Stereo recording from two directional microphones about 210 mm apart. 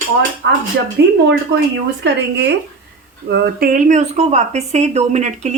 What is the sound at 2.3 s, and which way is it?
Speech, 55° right (ahead or behind).